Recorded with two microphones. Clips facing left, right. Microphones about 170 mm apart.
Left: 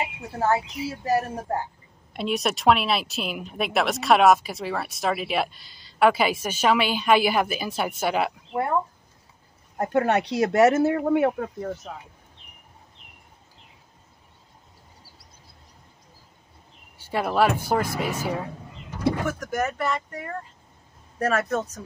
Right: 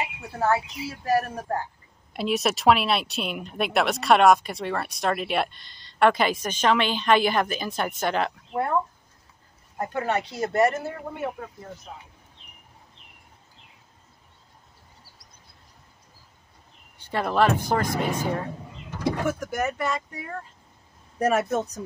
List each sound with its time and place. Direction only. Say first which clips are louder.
0.0 s speech: left 1 dB; 25° left (ahead or behind)
2.1 s speech: right 1 dB; centre (ahead or behind)
9.9 s speech: left 6 dB; 65° left (ahead or behind)
17.0 s speech: even; 5° left (ahead or behind)
19.2 s speech: even; 10° right (ahead or behind)
21.2 s speech: right 1 dB; 15° right (ahead or behind)